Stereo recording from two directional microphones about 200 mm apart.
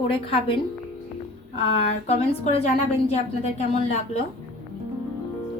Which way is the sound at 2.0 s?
30° left (ahead or behind).